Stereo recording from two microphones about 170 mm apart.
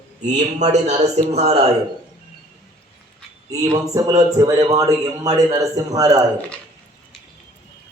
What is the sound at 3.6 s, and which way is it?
A man's voice, 20° right (ahead or behind).